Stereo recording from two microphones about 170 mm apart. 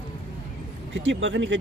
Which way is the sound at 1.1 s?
90° right.